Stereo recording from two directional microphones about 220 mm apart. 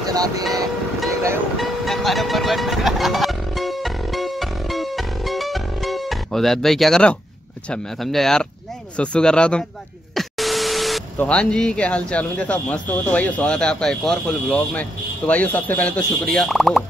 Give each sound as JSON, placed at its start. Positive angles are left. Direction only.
{"t": 0.0, "sound": "vehicle", "side_deg": -15}
{"t": 1.6, "sound": "music", "side_deg": 0}
{"t": 7.7, "sound": "speech", "side_deg": 0}